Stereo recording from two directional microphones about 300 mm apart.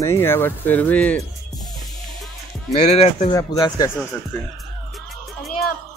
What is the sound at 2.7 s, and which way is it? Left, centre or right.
Speech, left.